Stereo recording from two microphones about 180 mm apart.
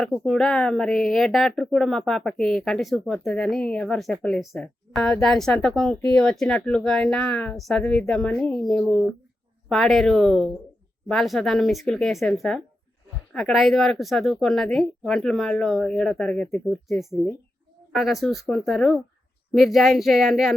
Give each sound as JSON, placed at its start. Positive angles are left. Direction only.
{"t": 0.3, "sound": "speech", "side_deg": 5}